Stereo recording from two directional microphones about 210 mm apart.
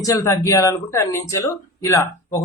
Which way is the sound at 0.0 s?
15° left (ahead or behind).